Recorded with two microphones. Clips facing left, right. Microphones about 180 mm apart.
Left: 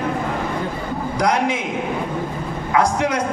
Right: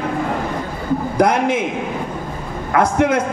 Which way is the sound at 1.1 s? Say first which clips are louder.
Right 3 dB; 50° right (ahead or behind).